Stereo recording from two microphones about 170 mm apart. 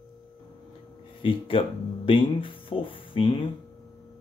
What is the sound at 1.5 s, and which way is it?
Speech, 35° left (ahead or behind).